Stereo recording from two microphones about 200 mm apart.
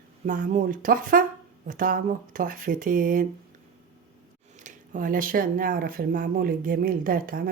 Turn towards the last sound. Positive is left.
turn(degrees=-45)  # may be behind; listen again after turning